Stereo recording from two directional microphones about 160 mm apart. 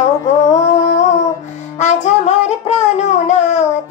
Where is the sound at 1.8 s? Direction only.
45° left (ahead or behind).